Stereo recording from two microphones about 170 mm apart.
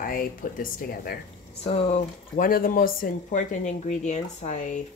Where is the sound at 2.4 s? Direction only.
55° left (ahead or behind).